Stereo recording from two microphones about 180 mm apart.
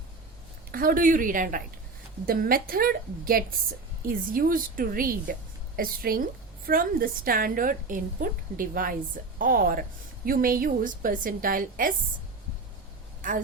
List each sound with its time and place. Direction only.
0.7 s a woman's voice: 55° right (ahead or behind)
13.2 s a woman's voice: 45° right (ahead or behind)